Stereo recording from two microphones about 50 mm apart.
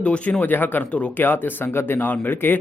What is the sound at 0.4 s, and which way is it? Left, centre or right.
Speech, left.